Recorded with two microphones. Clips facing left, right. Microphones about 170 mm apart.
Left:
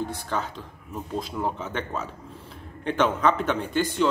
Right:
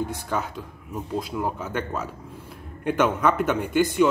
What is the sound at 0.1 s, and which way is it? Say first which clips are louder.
Speech: right 2 dB; 10° right (ahead or behind).